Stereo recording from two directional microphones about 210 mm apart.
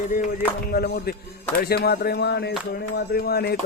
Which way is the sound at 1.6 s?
50° left (ahead or behind).